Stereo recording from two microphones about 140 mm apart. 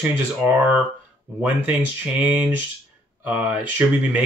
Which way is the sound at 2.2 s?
10° right (ahead or behind).